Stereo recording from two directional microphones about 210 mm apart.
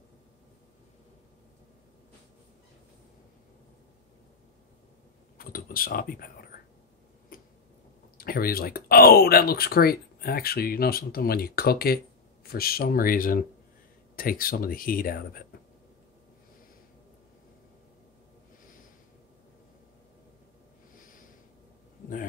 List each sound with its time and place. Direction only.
5.4 s speech: 45° left (ahead or behind)
8.2 s speech: 45° left (ahead or behind)
21.0 s a sound: 40° left (ahead or behind)